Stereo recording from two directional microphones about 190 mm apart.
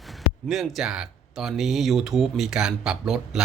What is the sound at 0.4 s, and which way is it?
Speech, centre (ahead or behind).